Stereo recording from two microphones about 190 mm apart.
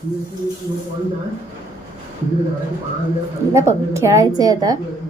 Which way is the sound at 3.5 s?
15° right (ahead or behind).